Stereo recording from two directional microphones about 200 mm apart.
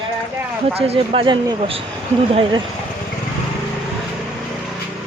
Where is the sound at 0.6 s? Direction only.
30° right (ahead or behind).